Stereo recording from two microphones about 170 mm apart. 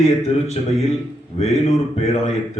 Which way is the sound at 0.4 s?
40° left (ahead or behind).